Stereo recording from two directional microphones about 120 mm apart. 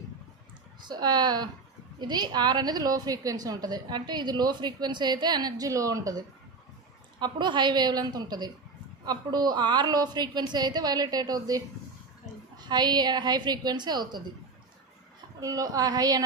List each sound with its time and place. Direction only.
0.8 s a woman's voice: 35° right (ahead or behind)
15.4 s a woman's voice: 30° right (ahead or behind)